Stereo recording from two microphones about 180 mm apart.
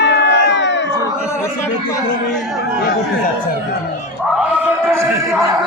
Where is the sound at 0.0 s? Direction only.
70° left (ahead or behind).